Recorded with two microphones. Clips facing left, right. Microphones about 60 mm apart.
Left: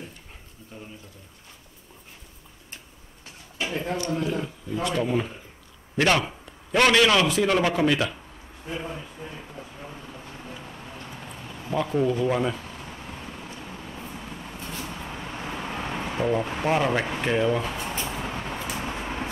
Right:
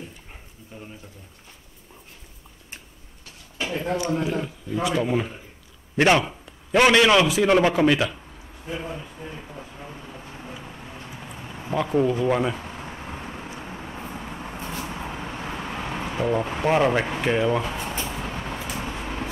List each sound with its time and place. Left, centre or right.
0.7 s a man's voice: centre
3.9 s a man's voice: right
8.6 s a sound: centre
11.8 s speech: right
12.1 s a sound: centre
13.6 s vehicle: right; by 15.6 s centre
15.7 s speech: centre
17.9 s vehicle: centre